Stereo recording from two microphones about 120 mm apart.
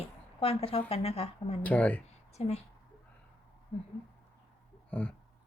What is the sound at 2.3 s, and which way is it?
Speech, 60° left (ahead or behind).